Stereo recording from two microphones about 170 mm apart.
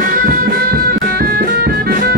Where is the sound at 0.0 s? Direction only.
55° right (ahead or behind).